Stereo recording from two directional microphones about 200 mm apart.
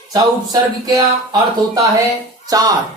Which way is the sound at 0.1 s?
20° right (ahead or behind).